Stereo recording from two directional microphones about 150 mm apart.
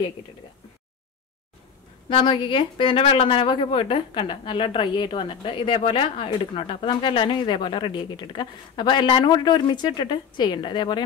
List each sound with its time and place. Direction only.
2.0 s a woman's voice: 35° left (ahead or behind)